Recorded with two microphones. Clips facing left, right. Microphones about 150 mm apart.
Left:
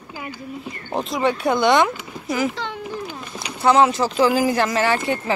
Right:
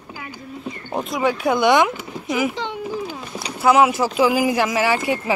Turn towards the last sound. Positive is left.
turn(degrees=-10)  # may be behind; listen again after turning